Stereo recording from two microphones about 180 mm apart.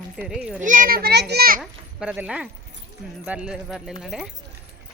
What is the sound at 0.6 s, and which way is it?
A child's voice, 45° right (ahead or behind).